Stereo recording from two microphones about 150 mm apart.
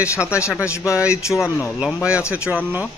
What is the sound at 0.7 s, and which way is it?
Speech, 20° left (ahead or behind).